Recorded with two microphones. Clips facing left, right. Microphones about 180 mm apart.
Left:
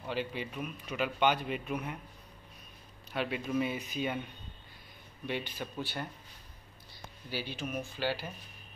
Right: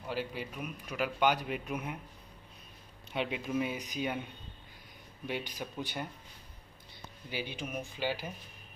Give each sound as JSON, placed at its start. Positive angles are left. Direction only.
{"t": 0.1, "sound": "speech", "side_deg": -5}
{"t": 3.1, "sound": "speech", "side_deg": -20}
{"t": 3.3, "sound": "speech", "side_deg": -5}
{"t": 7.2, "sound": "speech", "side_deg": -15}